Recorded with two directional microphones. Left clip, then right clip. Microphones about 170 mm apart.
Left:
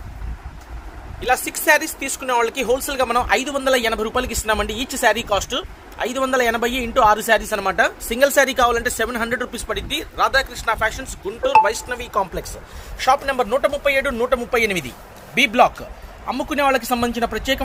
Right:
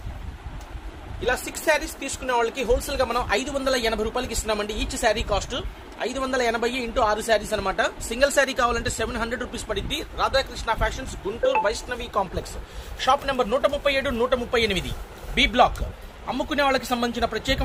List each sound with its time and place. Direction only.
1.2 s speech: 60° left (ahead or behind)
13.0 s a man's voice: 35° left (ahead or behind)